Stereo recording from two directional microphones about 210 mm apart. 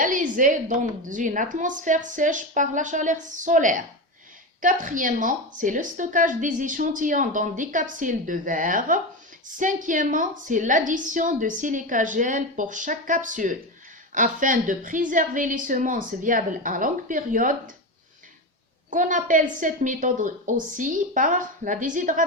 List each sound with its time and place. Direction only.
0.0 s a woman's voice: 40° right (ahead or behind)
18.9 s a woman's voice: 40° right (ahead or behind)